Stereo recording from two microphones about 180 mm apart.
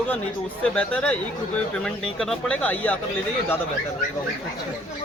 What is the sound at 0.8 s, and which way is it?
Speech, 5° left (ahead or behind).